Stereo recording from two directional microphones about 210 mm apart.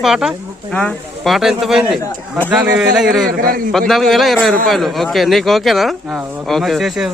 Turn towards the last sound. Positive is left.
turn(degrees=0)  # may be behind; listen again after turning